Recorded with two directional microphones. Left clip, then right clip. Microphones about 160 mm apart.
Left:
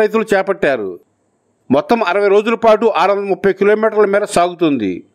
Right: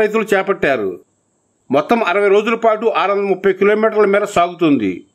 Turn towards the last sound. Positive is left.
turn(degrees=30)  # may be behind; listen again after turning